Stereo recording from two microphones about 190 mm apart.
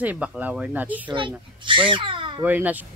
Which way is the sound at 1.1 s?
25° right (ahead or behind).